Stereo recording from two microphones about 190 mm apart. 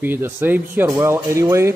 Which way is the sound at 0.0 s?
10° right (ahead or behind).